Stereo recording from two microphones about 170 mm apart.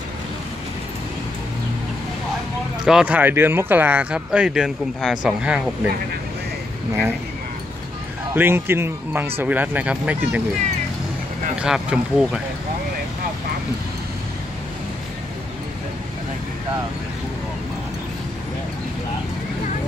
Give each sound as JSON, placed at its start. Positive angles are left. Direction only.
{"t": 2.8, "sound": "speech", "side_deg": -5}
{"t": 8.4, "sound": "speech", "side_deg": -15}
{"t": 11.6, "sound": "speech", "side_deg": -5}